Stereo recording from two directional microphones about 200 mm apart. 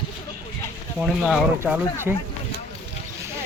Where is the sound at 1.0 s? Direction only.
Centre (ahead or behind).